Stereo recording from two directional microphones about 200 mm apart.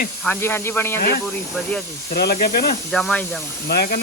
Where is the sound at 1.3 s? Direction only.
5° left (ahead or behind).